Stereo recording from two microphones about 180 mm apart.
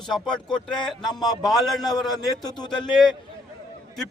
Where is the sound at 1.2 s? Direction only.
20° left (ahead or behind).